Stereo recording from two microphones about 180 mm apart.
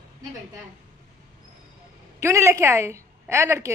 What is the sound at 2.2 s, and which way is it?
A woman's voice, 15° right (ahead or behind).